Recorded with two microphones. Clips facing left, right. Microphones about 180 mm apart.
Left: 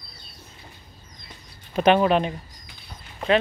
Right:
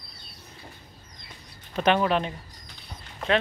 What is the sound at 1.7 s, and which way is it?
Speech, 15° left (ahead or behind).